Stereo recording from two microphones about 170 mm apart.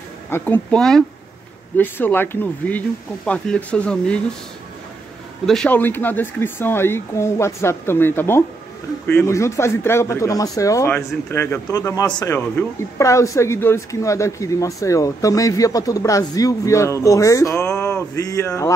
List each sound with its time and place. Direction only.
0.3 s speech: 10° left (ahead or behind)
5.5 s speech: 5° left (ahead or behind)